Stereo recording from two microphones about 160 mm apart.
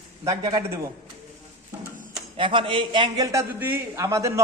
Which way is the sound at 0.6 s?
15° right (ahead or behind).